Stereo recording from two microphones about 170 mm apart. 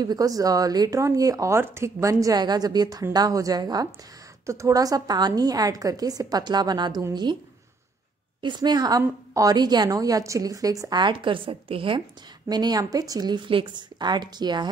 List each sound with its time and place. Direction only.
0.0 s speech: 20° right (ahead or behind)
8.4 s speech: 25° right (ahead or behind)